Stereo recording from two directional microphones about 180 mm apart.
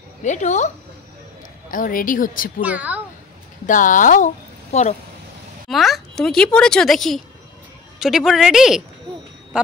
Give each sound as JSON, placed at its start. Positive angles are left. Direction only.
{"t": 0.2, "sound": "a woman's voice", "side_deg": 40}
{"t": 1.7, "sound": "a woman's voice", "side_deg": 50}
{"t": 2.6, "sound": "speech", "side_deg": -10}
{"t": 3.6, "sound": "a woman's voice", "side_deg": 45}
{"t": 5.7, "sound": "a woman's voice", "side_deg": 0}